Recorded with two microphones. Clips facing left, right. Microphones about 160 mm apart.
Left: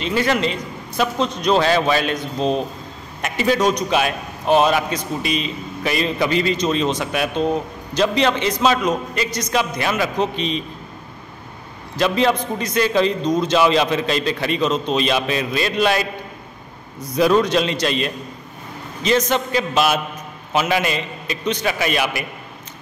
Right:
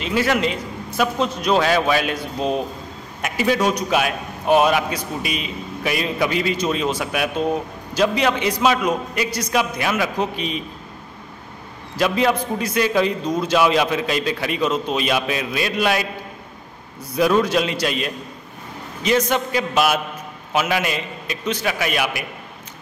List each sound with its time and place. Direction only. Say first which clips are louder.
0.0 s a man's voice: even; 5° right (ahead or behind)
12.0 s a man's voice: left 1 dB; 5° right (ahead or behind)